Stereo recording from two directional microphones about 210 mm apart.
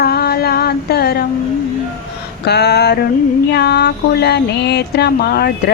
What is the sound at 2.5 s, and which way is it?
Speech, 50° left (ahead or behind).